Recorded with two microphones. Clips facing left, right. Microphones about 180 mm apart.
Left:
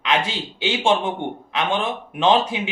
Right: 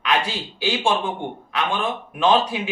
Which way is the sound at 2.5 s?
20° left (ahead or behind).